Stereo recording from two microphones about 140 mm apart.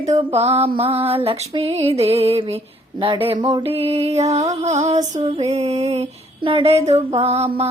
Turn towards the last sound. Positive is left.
turn(degrees=-45)  # may be behind; listen again after turning